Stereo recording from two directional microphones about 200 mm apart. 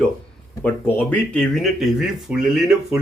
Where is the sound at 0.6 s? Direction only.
10° left (ahead or behind).